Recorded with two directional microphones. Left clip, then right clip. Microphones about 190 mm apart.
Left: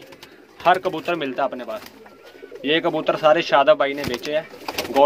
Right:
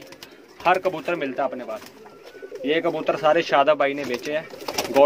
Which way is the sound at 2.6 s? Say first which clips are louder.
Left 2 dB; 15° left (ahead or behind).